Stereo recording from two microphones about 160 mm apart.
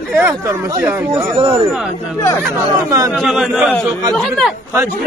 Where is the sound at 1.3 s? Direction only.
25° right (ahead or behind).